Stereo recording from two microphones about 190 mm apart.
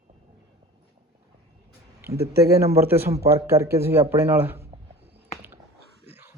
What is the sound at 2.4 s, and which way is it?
Speech, 15° right (ahead or behind).